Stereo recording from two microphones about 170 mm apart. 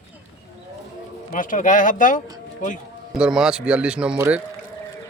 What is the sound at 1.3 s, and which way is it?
Speech, 50° left (ahead or behind).